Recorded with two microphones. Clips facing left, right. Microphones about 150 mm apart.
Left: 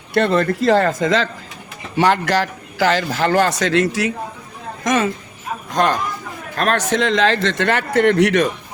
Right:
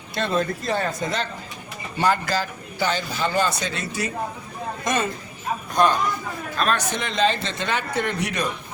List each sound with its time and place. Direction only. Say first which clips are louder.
0.1 s speech: left 7 dB; 65° left (ahead or behind); by 8.4 s 90° left